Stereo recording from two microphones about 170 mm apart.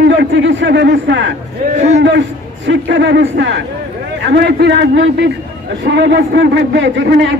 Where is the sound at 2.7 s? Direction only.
90° right.